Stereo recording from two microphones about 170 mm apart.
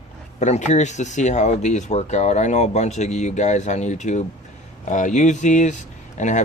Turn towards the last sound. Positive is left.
turn(degrees=45)  # may be behind; listen again after turning